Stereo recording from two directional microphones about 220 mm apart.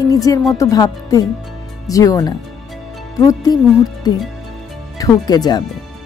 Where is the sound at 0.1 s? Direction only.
15° left (ahead or behind).